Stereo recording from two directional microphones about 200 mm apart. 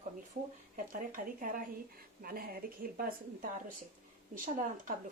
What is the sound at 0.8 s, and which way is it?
A woman's voice, 45° right (ahead or behind).